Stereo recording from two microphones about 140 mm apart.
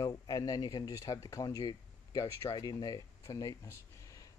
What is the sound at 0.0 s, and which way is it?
Speech, 25° left (ahead or behind).